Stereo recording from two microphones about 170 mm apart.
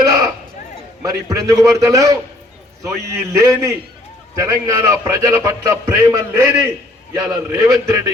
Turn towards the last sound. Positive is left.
turn(degrees=-20)  # may be behind; listen again after turning